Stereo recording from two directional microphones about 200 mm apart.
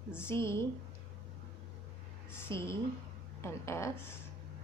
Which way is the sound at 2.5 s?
15° left (ahead or behind).